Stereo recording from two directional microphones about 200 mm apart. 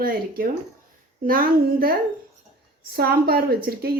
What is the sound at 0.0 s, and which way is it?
A woman's voice, 45° right (ahead or behind).